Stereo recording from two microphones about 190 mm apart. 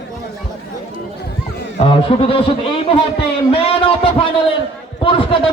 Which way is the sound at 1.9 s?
30° left (ahead or behind).